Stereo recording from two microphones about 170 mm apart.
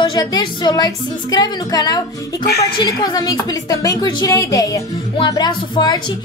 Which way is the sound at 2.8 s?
25° left (ahead or behind).